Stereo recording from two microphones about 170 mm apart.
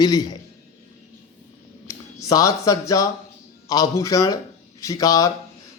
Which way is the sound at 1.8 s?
20° left (ahead or behind).